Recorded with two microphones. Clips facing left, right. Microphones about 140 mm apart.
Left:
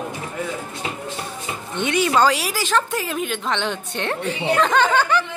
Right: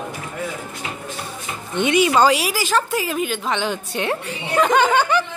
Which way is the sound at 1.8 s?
15° right (ahead or behind).